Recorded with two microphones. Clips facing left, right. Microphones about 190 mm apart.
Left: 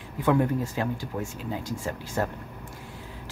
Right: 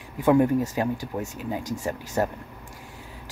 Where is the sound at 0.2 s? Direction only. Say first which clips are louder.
Right 4 dB; 15° right (ahead or behind).